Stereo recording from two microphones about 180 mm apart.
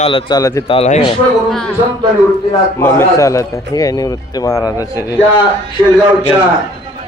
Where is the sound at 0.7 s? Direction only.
35° left (ahead or behind).